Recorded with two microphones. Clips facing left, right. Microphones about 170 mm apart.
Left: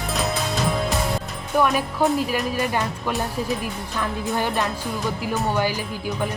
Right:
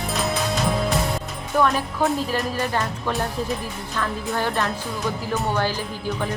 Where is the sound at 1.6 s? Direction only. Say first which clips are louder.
Left 1 dB; 15° left (ahead or behind).